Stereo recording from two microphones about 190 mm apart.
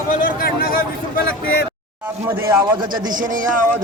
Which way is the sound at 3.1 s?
45° right (ahead or behind).